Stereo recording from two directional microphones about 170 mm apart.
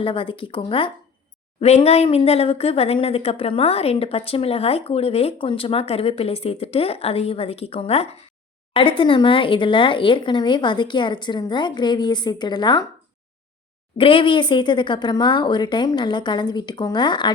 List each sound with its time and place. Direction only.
0.0 s speech: 30° left (ahead or behind)
14.0 s speech: 30° left (ahead or behind)